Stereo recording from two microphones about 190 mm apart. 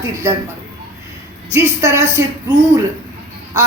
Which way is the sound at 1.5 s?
15° right (ahead or behind).